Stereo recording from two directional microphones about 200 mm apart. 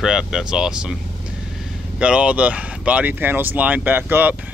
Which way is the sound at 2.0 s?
5° right (ahead or behind).